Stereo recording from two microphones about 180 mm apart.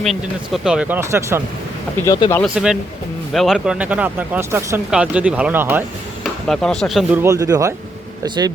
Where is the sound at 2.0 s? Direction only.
20° left (ahead or behind).